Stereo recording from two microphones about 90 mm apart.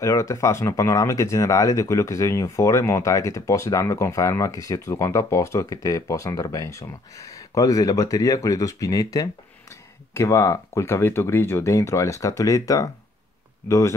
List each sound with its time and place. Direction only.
0.0 s speech: 35° left (ahead or behind)